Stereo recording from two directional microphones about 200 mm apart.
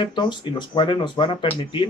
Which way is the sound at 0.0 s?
20° left (ahead or behind).